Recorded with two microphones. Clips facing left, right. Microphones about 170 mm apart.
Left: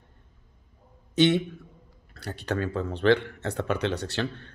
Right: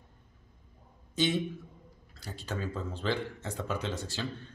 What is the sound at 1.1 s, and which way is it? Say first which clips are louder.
A man's voice: left 8 dB; 70° left (ahead or behind).